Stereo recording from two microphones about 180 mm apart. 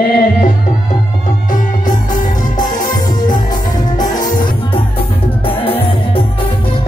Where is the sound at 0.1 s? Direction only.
50° left (ahead or behind).